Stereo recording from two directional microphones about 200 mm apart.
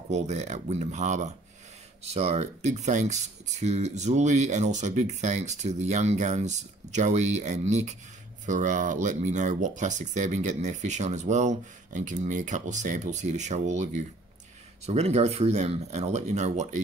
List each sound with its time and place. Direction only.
0.1 s speech: 35° right (ahead or behind)